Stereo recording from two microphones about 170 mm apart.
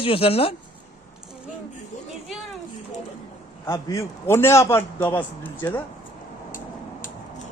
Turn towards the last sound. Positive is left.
turn(degrees=10)  # may be behind; listen again after turning